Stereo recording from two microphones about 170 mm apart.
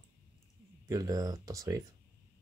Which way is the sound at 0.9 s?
20° right (ahead or behind).